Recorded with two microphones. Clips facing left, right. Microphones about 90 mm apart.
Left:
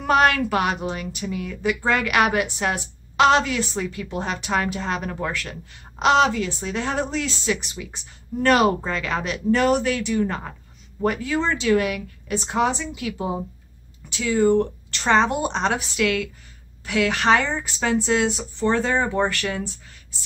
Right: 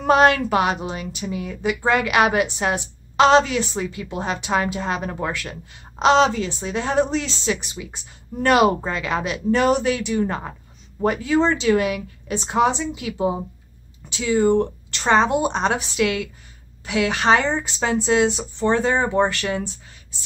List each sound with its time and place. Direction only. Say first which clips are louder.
0.0 s a woman's voice: right 3 dB; 25° right (ahead or behind)
7.7 s a woman's voice: right 1 dB; 15° right (ahead or behind)